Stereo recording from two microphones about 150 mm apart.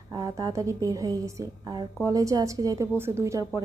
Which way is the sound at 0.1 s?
25° right (ahead or behind).